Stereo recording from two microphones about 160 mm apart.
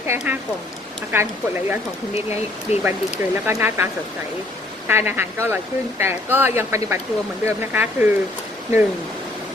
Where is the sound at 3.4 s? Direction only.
15° right (ahead or behind).